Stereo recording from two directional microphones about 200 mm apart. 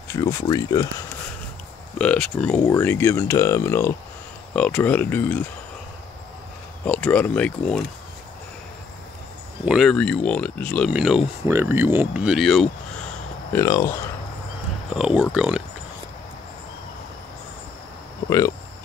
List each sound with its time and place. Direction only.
0.1 s speech: 15° left (ahead or behind)
2.0 s speech: 5° left (ahead or behind)
6.8 s speech: 5° left (ahead or behind)
9.7 s speech: centre (ahead or behind)
11.4 s speech: 15° right (ahead or behind)
13.5 s speech: 15° left (ahead or behind)
15.0 s speech: 5° right (ahead or behind)